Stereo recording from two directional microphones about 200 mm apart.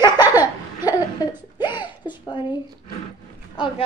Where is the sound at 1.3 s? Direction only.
20° left (ahead or behind).